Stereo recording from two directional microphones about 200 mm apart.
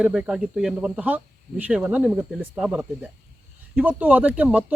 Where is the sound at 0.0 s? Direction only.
5° right (ahead or behind).